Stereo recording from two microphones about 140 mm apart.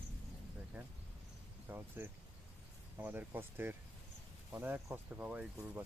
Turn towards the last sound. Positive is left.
turn(degrees=-10)  # may be behind; listen again after turning